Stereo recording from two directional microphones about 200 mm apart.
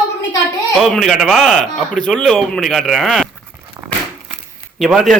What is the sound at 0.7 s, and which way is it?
Speech, centre (ahead or behind).